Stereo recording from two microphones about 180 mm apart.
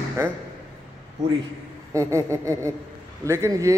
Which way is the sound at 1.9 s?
15° right (ahead or behind).